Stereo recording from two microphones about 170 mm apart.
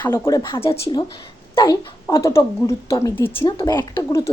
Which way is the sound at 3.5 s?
25° left (ahead or behind).